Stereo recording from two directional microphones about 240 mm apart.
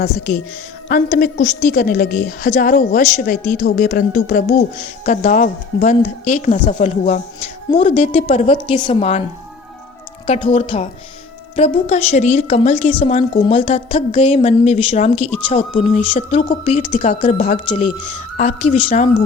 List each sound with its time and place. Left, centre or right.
0.9 s a woman's voice: left
10.2 s a woman's voice: left